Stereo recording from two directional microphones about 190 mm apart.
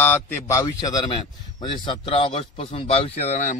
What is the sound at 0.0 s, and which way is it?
A man's voice, 10° left (ahead or behind).